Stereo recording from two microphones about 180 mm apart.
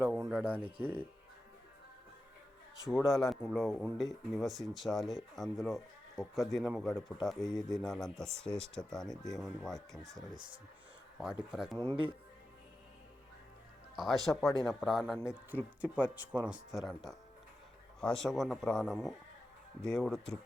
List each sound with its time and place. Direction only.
0.3 s speech: 10° right (ahead or behind)
2.8 s speech: centre (ahead or behind)
11.8 s speech: 20° right (ahead or behind)
13.9 s speech: centre (ahead or behind)